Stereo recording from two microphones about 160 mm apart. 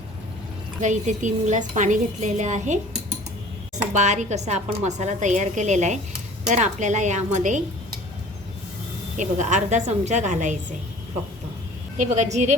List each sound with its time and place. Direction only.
0.8 s a woman's voice: 50° right (ahead or behind)
3.8 s a woman's voice: 45° right (ahead or behind)
9.1 s a woman's voice: 50° right (ahead or behind)
11.9 s a woman's voice: 50° right (ahead or behind)